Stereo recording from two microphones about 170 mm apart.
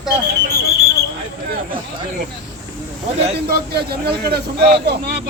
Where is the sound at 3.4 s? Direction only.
70° right (ahead or behind).